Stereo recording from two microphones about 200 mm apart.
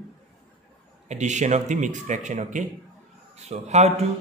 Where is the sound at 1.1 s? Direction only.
35° right (ahead or behind).